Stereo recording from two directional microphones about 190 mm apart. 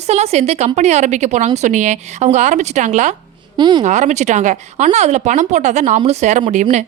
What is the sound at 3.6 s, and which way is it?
Speech, 25° right (ahead or behind).